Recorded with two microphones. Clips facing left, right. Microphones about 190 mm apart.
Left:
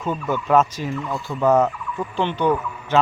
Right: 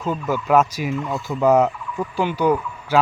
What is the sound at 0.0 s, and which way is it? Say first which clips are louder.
Speech: right 1 dB; 5° right (ahead or behind).